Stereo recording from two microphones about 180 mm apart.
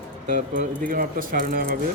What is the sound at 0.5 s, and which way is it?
Speech, 50° right (ahead or behind).